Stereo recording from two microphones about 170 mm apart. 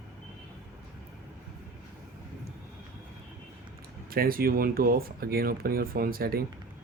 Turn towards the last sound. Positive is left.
turn(degrees=-60)  # may be behind; listen again after turning